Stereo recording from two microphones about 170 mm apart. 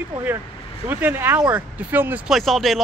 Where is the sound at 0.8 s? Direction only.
10° right (ahead or behind).